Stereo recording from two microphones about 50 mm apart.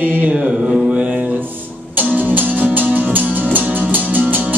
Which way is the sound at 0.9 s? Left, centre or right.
Right.